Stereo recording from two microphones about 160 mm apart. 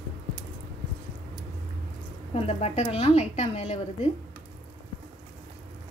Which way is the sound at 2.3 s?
40° left (ahead or behind).